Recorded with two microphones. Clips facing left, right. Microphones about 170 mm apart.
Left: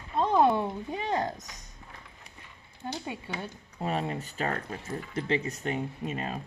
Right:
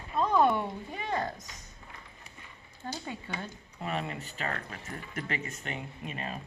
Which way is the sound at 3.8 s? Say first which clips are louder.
Left 4 dB; 35° left (ahead or behind).